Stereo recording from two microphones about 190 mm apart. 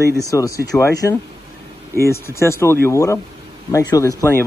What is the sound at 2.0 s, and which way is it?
Speech, 15° left (ahead or behind).